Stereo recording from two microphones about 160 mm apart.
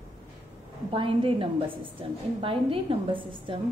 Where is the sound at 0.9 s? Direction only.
35° right (ahead or behind).